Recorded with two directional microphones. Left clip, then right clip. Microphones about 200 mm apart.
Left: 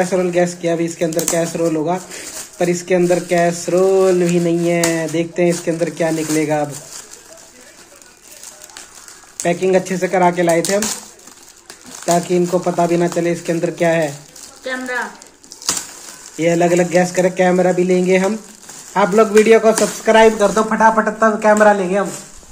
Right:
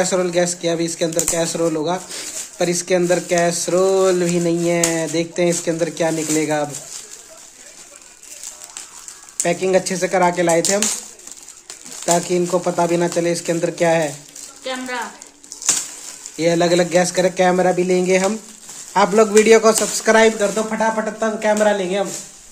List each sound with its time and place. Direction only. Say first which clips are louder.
0.0 s speech: left 2 dB; 25° right (ahead or behind)
9.4 s speech: left 2 dB; 25° right (ahead or behind)
12.0 s speech: left 2 dB; 25° right (ahead or behind)
16.3 s speech: left 2 dB; 25° right (ahead or behind)
20.3 s speech: left 5 dB; centre (ahead or behind)
21.5 s speech: left 5 dB; 20° right (ahead or behind)